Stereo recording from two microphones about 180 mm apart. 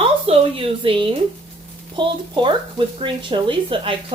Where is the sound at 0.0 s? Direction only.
30° right (ahead or behind).